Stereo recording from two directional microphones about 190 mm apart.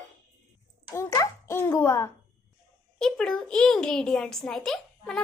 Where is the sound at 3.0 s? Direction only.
5° left (ahead or behind).